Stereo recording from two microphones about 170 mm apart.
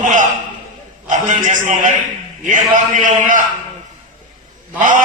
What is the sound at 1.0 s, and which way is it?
A man's voice, 45° right (ahead or behind).